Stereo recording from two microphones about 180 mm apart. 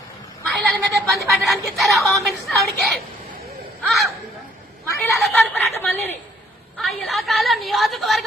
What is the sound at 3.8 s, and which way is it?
Speech, centre (ahead or behind).